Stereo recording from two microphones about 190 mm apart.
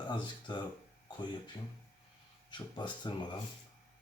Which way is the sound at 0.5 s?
25° left (ahead or behind).